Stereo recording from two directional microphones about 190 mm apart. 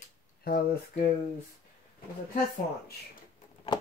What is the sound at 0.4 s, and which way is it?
Speech, 55° left (ahead or behind).